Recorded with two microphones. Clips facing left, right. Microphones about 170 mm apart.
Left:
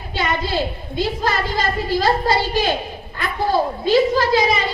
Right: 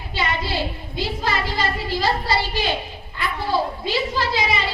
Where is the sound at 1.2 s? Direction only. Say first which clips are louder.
Left 3 dB; 45° left (ahead or behind).